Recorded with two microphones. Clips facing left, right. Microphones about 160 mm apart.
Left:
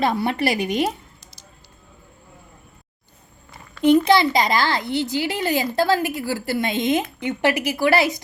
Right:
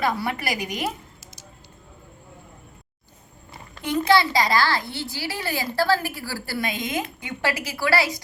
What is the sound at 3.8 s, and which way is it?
A child's voice, 20° left (ahead or behind).